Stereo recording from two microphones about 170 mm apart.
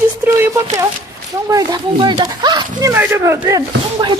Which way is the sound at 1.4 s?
20° right (ahead or behind).